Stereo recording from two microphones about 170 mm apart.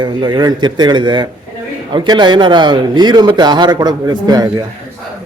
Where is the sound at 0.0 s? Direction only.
25° right (ahead or behind).